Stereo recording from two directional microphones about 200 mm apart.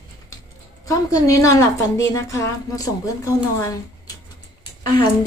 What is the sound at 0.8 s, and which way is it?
A woman's voice, 15° left (ahead or behind).